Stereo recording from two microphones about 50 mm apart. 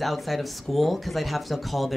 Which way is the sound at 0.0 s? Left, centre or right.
Centre.